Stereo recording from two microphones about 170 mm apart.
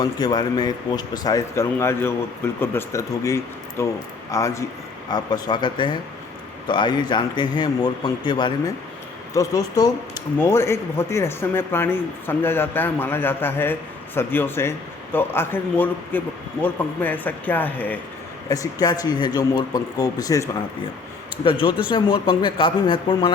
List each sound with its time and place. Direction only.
0.0 s a man's voice: 25° left (ahead or behind)
18.4 s a man's voice: 20° left (ahead or behind)